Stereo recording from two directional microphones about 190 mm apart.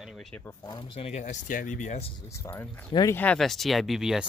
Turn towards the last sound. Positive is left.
turn(degrees=0)  # may be behind; listen again after turning